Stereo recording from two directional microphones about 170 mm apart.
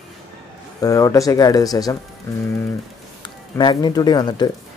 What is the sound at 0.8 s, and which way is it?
Speech, 20° left (ahead or behind).